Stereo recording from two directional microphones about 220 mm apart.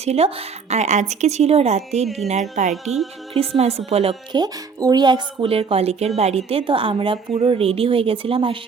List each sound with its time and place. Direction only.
0.0 s a woman's voice: 30° right (ahead or behind)
2.8 s speech: centre (ahead or behind)
3.3 s a woman's voice: 25° right (ahead or behind)